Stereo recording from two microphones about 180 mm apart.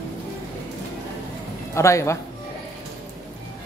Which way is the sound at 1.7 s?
15° left (ahead or behind).